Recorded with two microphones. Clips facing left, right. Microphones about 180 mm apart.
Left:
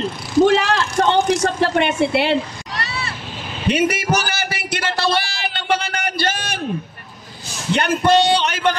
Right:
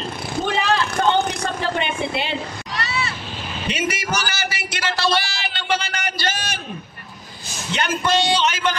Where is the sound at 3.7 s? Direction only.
60° left (ahead or behind).